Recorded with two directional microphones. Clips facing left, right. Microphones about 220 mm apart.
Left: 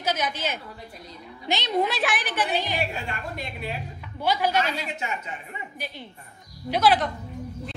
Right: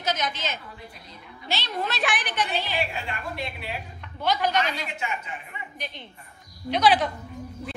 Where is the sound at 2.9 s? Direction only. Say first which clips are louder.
Even; 45° left (ahead or behind).